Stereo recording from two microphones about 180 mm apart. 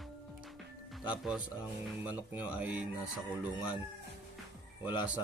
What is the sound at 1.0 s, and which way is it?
Speech, 5° right (ahead or behind).